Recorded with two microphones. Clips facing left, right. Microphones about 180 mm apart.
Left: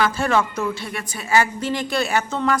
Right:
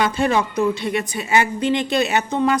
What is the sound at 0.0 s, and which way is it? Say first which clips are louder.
A woman's voice: right 1 dB; 20° right (ahead or behind).